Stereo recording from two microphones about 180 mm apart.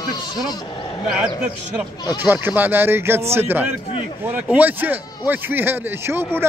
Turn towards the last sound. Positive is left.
turn(degrees=-15)  # may be behind; listen again after turning